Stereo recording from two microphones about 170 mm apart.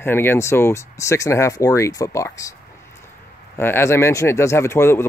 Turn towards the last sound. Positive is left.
turn(degrees=15)  # may be behind; listen again after turning